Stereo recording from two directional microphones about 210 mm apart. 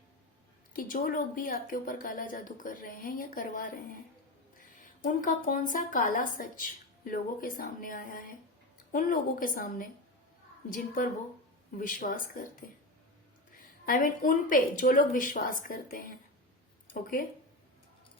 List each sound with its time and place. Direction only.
0.7 s a woman's voice: 45° left (ahead or behind)
5.2 s a woman's voice: 40° left (ahead or behind)